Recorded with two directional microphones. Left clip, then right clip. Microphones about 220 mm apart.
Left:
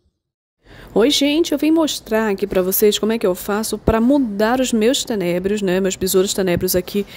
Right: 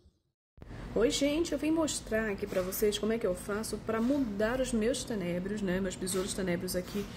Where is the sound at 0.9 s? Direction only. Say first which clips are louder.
Left 14 dB; 40° left (ahead or behind).